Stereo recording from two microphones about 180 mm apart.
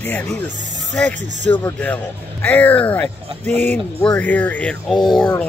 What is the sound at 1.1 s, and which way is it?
Speech, 75° right (ahead or behind).